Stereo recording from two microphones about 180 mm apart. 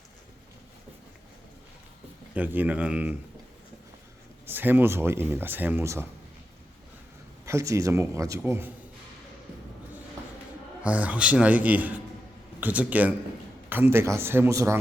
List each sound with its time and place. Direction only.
2.3 s speech: 10° right (ahead or behind)
4.4 s speech: 10° right (ahead or behind)
7.4 s speech: 15° right (ahead or behind)
10.8 s speech: 10° right (ahead or behind)